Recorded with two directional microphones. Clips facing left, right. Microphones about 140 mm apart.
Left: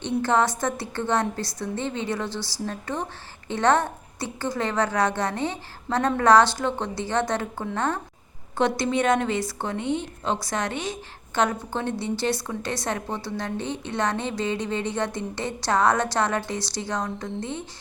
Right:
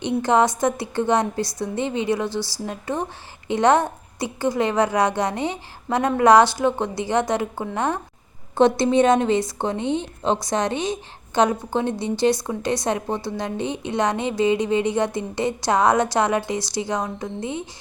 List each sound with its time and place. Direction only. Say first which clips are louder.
0.0 s a woman's voice: right 4 dB; 15° right (ahead or behind)
8.5 s a woman's voice: right 7 dB; 20° right (ahead or behind)